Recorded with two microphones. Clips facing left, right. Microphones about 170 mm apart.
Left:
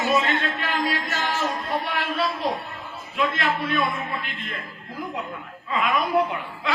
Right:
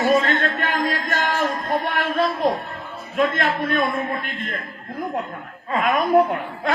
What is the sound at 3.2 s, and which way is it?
A man's voice, 45° right (ahead or behind).